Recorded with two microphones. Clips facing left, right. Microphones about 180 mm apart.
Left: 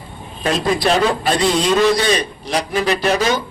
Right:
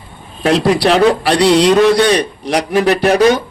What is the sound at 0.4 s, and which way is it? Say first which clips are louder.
A man's voice: right 5 dB; 70° right (ahead or behind).